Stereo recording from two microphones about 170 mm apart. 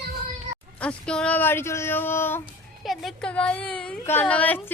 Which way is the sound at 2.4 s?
Centre (ahead or behind).